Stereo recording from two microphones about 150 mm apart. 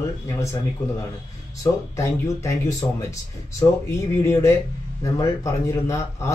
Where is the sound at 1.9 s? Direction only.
20° left (ahead or behind).